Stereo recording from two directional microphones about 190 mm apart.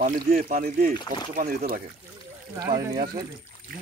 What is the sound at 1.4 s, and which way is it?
Speech, 35° right (ahead or behind).